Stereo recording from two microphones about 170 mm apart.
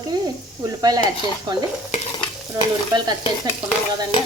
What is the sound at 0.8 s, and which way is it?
Speech, 20° right (ahead or behind).